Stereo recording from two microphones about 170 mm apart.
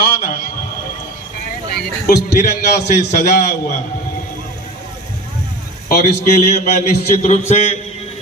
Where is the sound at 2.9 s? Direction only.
45° left (ahead or behind).